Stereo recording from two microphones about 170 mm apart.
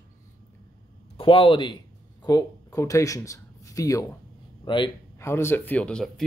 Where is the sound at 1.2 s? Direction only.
30° left (ahead or behind).